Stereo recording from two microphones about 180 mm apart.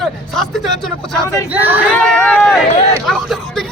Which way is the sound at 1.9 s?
5° left (ahead or behind).